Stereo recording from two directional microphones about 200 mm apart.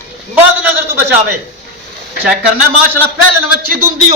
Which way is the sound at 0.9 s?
10° right (ahead or behind).